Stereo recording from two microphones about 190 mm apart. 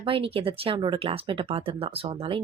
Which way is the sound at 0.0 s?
30° right (ahead or behind).